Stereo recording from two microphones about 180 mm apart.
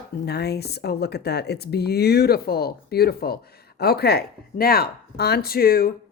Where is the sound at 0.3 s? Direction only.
65° left (ahead or behind).